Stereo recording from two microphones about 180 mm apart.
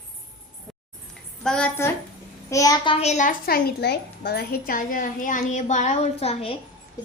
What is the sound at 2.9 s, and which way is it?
A woman's voice, 35° left (ahead or behind).